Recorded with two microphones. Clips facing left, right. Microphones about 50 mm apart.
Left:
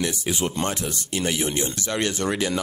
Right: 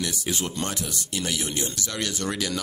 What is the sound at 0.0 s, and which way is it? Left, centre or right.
Speech, left.